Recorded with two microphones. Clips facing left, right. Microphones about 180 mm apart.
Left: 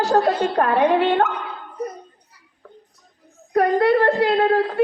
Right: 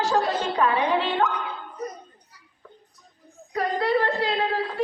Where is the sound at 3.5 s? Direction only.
60° left (ahead or behind).